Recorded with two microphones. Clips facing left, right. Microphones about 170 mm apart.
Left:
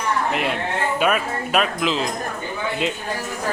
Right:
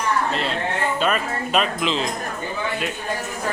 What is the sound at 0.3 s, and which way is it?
Speech, 15° left (ahead or behind).